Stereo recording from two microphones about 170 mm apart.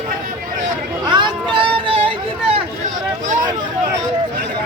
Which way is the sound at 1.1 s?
25° right (ahead or behind).